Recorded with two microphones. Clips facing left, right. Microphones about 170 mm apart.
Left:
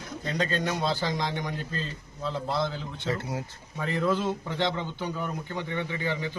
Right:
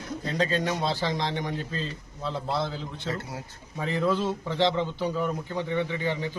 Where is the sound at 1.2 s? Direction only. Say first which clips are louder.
Right 1 dB; 30° right (ahead or behind).